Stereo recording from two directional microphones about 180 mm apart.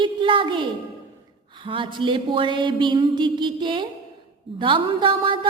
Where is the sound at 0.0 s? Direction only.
25° right (ahead or behind).